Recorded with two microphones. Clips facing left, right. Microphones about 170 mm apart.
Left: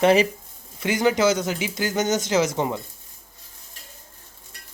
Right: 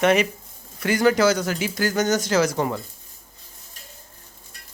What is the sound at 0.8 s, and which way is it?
Speech, 20° left (ahead or behind).